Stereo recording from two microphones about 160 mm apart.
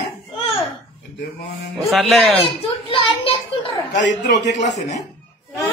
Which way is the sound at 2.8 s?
35° left (ahead or behind).